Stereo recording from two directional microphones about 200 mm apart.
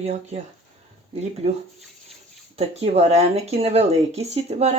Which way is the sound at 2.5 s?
30° right (ahead or behind).